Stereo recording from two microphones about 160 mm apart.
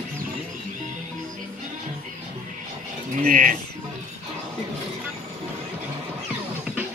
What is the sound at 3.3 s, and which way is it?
Music, 60° right (ahead or behind).